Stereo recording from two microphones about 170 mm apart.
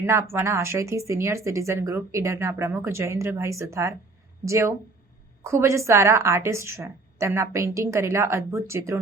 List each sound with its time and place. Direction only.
0.0 s a woman's voice: 15° right (ahead or behind)